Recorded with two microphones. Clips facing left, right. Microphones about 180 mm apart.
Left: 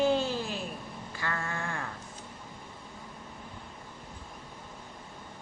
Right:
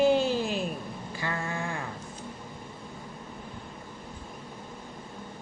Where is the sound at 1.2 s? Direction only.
15° right (ahead or behind).